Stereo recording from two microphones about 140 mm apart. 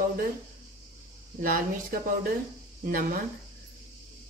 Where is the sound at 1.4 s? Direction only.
90° right.